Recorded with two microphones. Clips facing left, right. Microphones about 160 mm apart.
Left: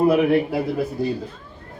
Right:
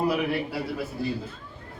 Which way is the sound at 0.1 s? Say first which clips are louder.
Left 9 dB; 50° left (ahead or behind).